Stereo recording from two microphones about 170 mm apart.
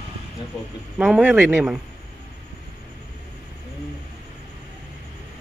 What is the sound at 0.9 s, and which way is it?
Speech, 5° right (ahead or behind).